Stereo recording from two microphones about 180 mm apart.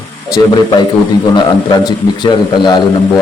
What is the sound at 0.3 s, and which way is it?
Speech, 25° left (ahead or behind).